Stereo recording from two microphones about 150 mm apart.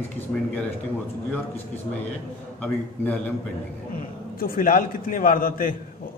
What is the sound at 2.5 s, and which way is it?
Speech, 10° left (ahead or behind).